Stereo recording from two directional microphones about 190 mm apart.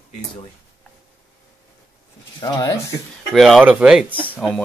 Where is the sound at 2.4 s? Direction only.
20° left (ahead or behind).